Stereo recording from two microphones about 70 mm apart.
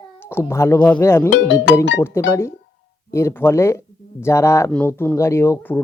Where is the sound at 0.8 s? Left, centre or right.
Left.